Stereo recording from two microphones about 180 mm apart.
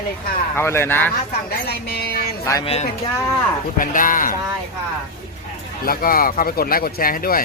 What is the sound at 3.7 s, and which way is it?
Speech, 50° left (ahead or behind).